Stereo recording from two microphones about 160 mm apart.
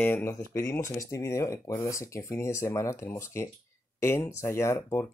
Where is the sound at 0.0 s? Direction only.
15° left (ahead or behind).